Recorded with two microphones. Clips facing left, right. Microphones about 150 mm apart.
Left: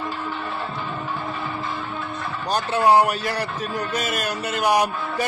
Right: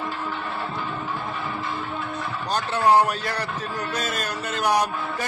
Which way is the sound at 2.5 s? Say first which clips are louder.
Left 2 dB; 10° left (ahead or behind).